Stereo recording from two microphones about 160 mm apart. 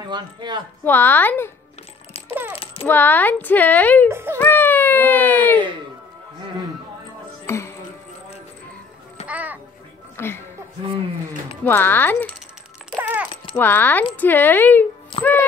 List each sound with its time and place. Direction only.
0.0 s speech: 30° right (ahead or behind)
0.8 s a woman's voice: 10° left (ahead or behind)
2.5 s coin: 35° left (ahead or behind)
2.9 s a woman's voice: 10° left (ahead or behind)
4.1 s speech: 15° right (ahead or behind)
4.4 s baby cry: 15° left (ahead or behind)
7.4 s music: 15° left (ahead or behind)
9.3 s a sound: 10° right (ahead or behind)
10.1 s speech: 15° left (ahead or behind)
11.6 s a woman's voice: 15° left (ahead or behind)
12.9 s music: 10° right (ahead or behind)
13.6 s a woman's voice: 10° left (ahead or behind)
15.1 s music: 35° left (ahead or behind)